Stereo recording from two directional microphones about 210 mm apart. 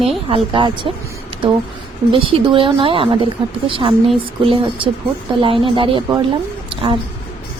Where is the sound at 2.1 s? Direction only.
25° right (ahead or behind).